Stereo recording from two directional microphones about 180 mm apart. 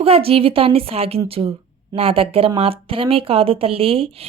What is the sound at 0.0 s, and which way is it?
Speech, 30° right (ahead or behind).